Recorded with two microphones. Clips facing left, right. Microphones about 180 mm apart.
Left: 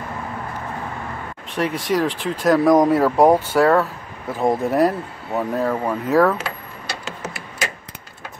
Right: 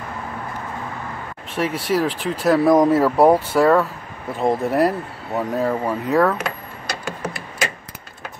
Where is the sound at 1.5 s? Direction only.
5° right (ahead or behind).